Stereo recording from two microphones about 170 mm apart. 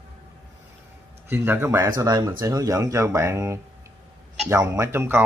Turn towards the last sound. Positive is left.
turn(degrees=-15)  # may be behind; listen again after turning